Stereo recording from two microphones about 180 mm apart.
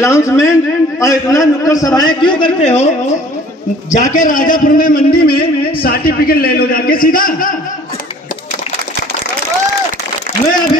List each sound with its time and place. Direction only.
0.0 s a man's voice: 15° left (ahead or behind); by 7.5 s 50° left (ahead or behind)